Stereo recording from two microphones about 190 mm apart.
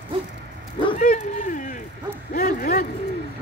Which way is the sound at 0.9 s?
40° left (ahead or behind).